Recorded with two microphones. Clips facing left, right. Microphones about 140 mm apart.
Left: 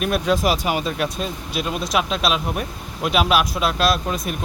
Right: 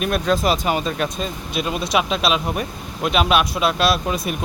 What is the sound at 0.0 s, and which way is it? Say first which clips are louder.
Speech: even; 5° left (ahead or behind).